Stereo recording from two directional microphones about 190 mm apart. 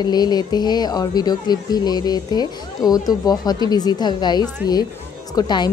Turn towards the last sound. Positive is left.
turn(degrees=25)  # may be behind; listen again after turning